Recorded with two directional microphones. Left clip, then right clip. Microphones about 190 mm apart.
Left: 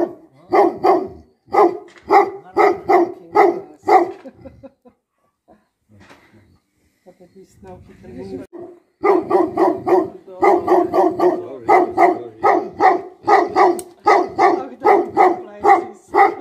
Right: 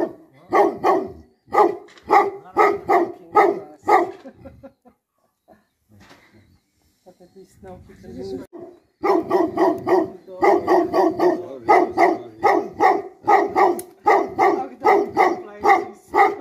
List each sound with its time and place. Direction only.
0.0 s dog: centre (ahead or behind)
9.0 s dog: 5° right (ahead or behind)